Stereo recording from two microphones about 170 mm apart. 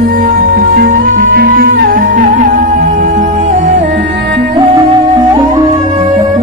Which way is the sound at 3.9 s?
85° right.